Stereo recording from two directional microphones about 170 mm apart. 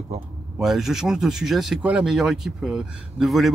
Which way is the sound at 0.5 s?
Centre (ahead or behind).